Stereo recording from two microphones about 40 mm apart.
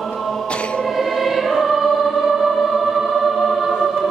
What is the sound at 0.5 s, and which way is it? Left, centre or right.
Choir, left.